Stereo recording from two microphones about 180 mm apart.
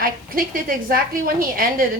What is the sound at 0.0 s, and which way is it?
A woman's voice, 50° right (ahead or behind).